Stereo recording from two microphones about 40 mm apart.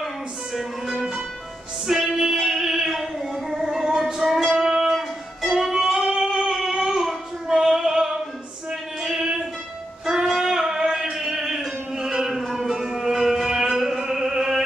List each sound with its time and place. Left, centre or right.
0.6 s music: centre
4.5 s music: centre
4.9 s music: centre
6.9 s child singing: centre
9.0 s music: centre
10.0 s a sound: centre
12.4 s music: centre